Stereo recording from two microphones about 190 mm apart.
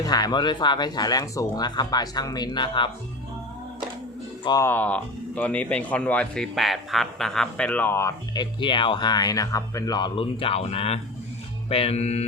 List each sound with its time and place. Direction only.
0.0 s speech: 20° left (ahead or behind)
4.4 s speech: 15° left (ahead or behind); by 11.0 s 30° left (ahead or behind)
11.7 s music: 30° left (ahead or behind)